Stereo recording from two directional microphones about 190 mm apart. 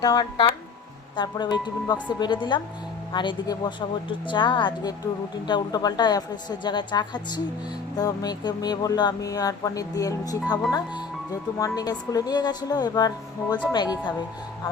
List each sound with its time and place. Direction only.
0.0 s speech: 20° left (ahead or behind)